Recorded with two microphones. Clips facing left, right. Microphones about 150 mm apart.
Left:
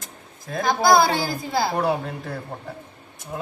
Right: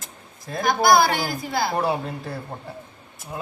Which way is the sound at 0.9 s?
25° left (ahead or behind).